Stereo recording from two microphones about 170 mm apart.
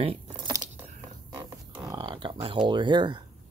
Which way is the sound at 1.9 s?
25° right (ahead or behind).